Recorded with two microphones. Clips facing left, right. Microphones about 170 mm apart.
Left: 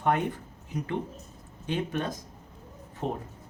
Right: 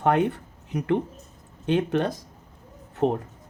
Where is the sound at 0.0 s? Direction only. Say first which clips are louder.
Right 5 dB; 65° right (ahead or behind).